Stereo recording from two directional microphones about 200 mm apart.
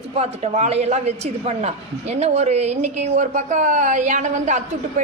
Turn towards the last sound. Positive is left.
turn(degrees=-35)  # may be behind; listen again after turning